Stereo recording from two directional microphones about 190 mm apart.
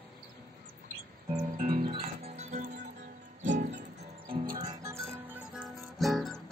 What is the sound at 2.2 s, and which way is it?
Music, 35° right (ahead or behind).